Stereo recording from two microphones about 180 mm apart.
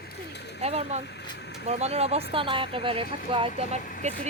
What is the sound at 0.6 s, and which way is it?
Speech, 35° right (ahead or behind).